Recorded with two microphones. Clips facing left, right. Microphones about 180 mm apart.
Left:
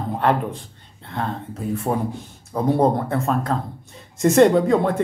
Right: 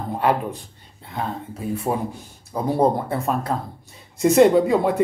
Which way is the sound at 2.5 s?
5° right (ahead or behind).